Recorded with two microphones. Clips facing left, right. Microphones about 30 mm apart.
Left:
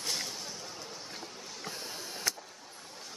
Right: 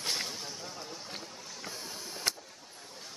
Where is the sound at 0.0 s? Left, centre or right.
Centre.